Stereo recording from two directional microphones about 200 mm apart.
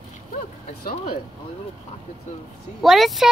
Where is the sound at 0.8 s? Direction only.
45° left (ahead or behind).